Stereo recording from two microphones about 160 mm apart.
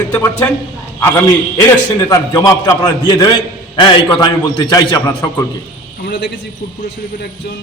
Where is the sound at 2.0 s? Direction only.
20° left (ahead or behind).